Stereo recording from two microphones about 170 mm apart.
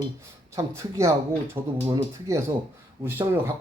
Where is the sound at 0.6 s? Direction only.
20° right (ahead or behind).